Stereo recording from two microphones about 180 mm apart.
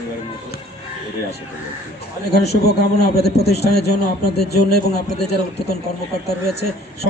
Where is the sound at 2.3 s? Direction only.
65° left (ahead or behind).